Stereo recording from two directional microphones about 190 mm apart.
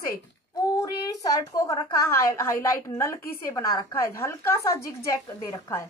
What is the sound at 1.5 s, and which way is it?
A woman's voice, 20° left (ahead or behind).